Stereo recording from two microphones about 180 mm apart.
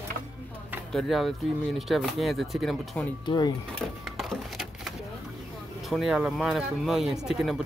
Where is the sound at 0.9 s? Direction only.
Centre (ahead or behind).